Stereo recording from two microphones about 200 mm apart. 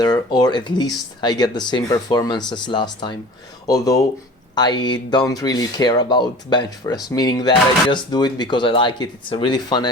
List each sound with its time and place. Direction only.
0.0 s speech: 20° left (ahead or behind)